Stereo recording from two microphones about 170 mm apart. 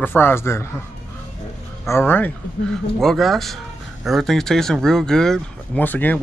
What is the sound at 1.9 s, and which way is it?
Speech, 15° left (ahead or behind).